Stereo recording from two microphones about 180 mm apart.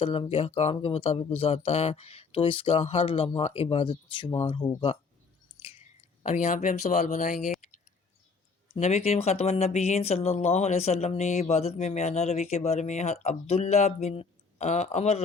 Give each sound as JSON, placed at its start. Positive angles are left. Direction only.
{"t": 0.0, "sound": "speech", "side_deg": 30}
{"t": 5.5, "sound": "chewing", "side_deg": 35}
{"t": 6.2, "sound": "speech", "side_deg": 40}
{"t": 8.7, "sound": "speech", "side_deg": 35}